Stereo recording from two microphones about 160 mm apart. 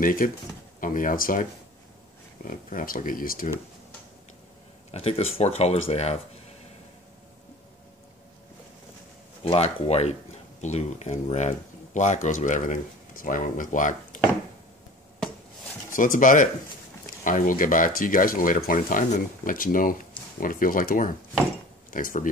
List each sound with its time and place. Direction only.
0.0 s speech: 60° left (ahead or behind)
4.9 s speech: 40° left (ahead or behind)
9.4 s speech: 35° left (ahead or behind); by 14.2 s 55° left (ahead or behind)
15.9 s speech: 55° left (ahead or behind)